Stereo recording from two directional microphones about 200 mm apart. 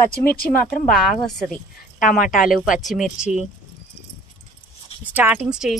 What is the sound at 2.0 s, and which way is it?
Speech, 40° left (ahead or behind).